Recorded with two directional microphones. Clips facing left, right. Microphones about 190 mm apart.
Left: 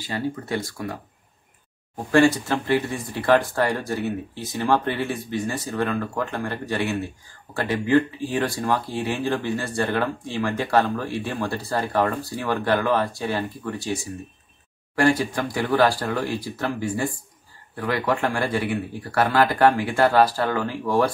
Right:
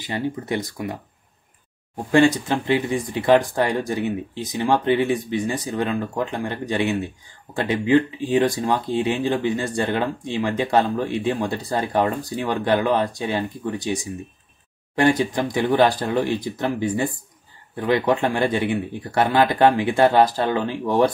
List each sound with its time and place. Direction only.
0.0 s speech: 20° right (ahead or behind)
2.0 s speech: 20° right (ahead or behind)